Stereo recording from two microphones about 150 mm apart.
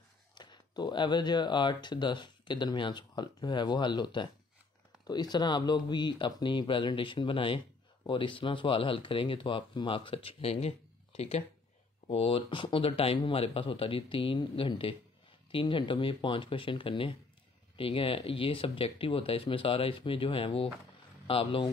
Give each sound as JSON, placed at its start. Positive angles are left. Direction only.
{"t": 0.3, "sound": "speech", "side_deg": 30}